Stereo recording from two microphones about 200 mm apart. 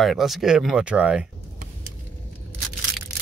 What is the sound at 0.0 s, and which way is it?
Speech, centre (ahead or behind).